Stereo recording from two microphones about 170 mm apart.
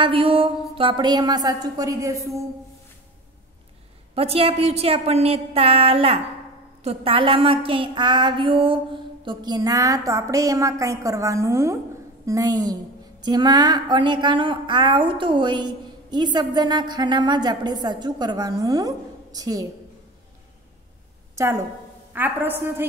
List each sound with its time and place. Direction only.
0.0 s speech: 30° right (ahead or behind)
4.1 s a woman's voice: 35° right (ahead or behind)
21.4 s a woman's voice: 20° right (ahead or behind)